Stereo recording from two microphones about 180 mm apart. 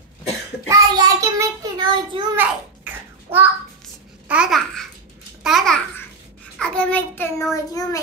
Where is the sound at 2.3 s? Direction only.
10° right (ahead or behind).